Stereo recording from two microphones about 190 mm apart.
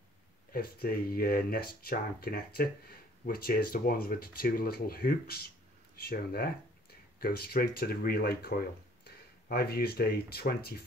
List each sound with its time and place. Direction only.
0.5 s speech: 50° left (ahead or behind)